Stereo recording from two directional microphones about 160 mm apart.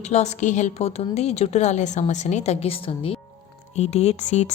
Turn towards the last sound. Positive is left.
turn(degrees=45)  # may be behind; listen again after turning